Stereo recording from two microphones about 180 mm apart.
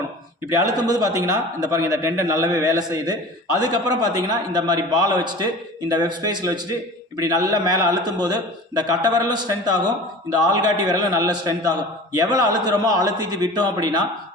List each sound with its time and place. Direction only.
0.5 s a man's voice: 20° right (ahead or behind)